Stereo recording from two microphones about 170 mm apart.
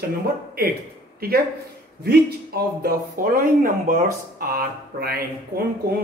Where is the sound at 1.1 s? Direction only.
65° right (ahead or behind).